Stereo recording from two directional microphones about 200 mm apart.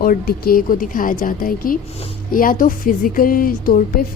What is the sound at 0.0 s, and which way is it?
Speech, 45° left (ahead or behind).